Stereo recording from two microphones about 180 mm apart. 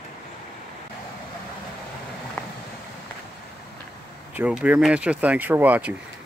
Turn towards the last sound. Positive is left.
turn(degrees=-10)  # may be behind; listen again after turning